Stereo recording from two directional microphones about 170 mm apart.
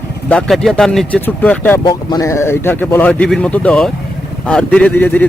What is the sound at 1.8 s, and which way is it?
Speech, 25° left (ahead or behind).